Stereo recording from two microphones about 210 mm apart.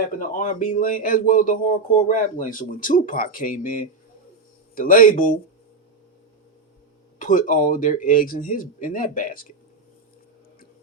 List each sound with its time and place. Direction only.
0.2 s speech: 40° left (ahead or behind)
7.2 s speech: 40° left (ahead or behind)